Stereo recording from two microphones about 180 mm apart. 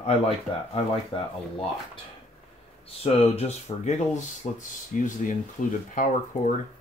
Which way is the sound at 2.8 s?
35° left (ahead or behind).